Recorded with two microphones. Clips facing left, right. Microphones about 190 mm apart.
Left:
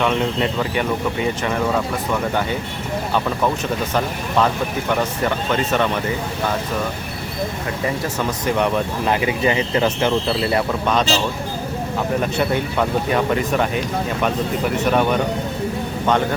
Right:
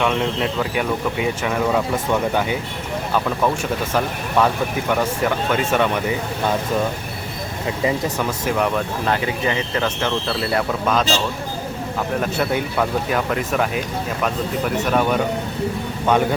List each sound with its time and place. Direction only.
0.0 s speech: centre (ahead or behind)
3.9 s speech: 5° right (ahead or behind)
8.4 s speech: centre (ahead or behind)
9.0 s speech: 15° left (ahead or behind)
10.8 s speech: centre (ahead or behind)
12.2 s speech: centre (ahead or behind)